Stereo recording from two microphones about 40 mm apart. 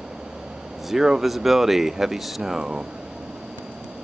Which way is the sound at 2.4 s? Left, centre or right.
Centre.